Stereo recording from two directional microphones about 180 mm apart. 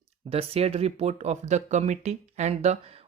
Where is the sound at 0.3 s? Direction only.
35° right (ahead or behind).